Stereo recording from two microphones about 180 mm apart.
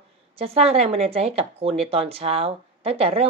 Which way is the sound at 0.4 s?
35° right (ahead or behind).